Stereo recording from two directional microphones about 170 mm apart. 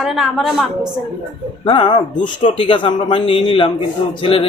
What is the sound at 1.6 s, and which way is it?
Speech, 30° left (ahead or behind).